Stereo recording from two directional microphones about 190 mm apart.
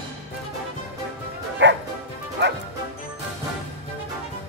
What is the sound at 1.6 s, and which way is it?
Bow-wow, 65° right (ahead or behind).